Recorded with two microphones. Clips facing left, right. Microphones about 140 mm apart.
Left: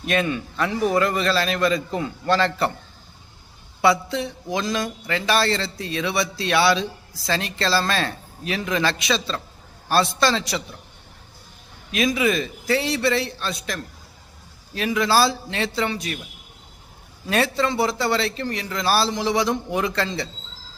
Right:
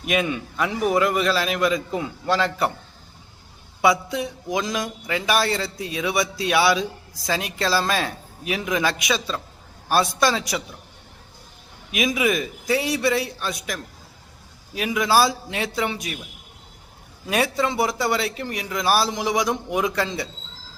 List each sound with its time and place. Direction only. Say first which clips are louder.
0.0 s a man's voice: left 1 dB; 10° right (ahead or behind)
3.8 s a man's voice: even; 15° right (ahead or behind)
11.9 s a man's voice: left 1 dB; 15° right (ahead or behind)
17.2 s a man's voice: left 1 dB; 15° right (ahead or behind)